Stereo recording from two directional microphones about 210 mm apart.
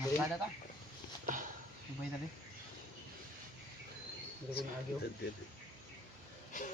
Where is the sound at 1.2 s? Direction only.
40° right (ahead or behind).